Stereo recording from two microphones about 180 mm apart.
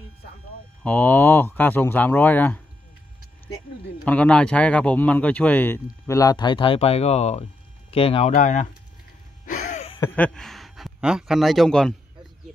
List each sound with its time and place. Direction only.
0.8 s speech: 10° left (ahead or behind)
4.0 s speech: 5° left (ahead or behind); by 8.3 s 30° left (ahead or behind)
8.4 s speech: 45° left (ahead or behind)
9.5 s a sound: 45° left (ahead or behind)
9.9 s speech: 10° left (ahead or behind)